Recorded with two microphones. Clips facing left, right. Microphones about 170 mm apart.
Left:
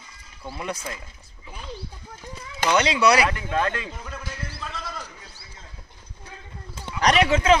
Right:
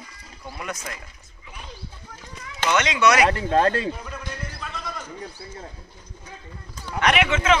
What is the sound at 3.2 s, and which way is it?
Speech, 35° right (ahead or behind).